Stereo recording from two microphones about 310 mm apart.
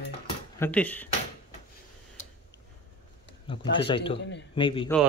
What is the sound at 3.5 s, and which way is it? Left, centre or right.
Speech, centre.